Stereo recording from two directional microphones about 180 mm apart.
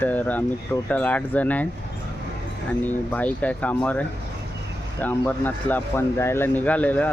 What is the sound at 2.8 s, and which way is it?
Speech, 10° left (ahead or behind).